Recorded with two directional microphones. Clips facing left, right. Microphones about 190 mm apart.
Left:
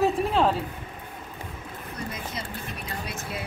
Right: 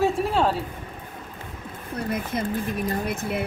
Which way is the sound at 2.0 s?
55° right (ahead or behind).